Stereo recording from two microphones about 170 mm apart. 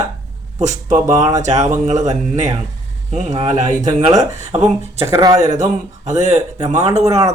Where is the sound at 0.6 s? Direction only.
45° right (ahead or behind).